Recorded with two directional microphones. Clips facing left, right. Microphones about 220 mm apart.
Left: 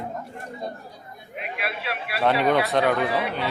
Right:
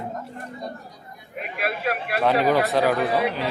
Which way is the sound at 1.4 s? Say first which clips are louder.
Right 5 dB; 45° right (ahead or behind).